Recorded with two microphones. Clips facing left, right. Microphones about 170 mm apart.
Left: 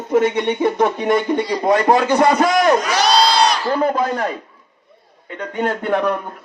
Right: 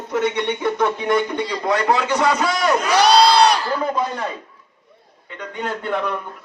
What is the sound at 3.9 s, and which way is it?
Speech, 55° left (ahead or behind).